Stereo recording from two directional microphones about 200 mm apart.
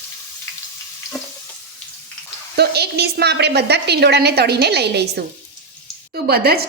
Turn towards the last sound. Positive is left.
turn(degrees=-50)  # may be behind; listen again after turning